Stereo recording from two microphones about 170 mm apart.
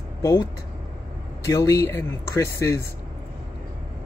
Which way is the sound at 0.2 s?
25° left (ahead or behind).